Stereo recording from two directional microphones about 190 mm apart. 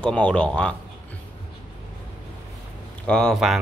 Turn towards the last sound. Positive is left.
turn(degrees=0)  # may be behind; listen again after turning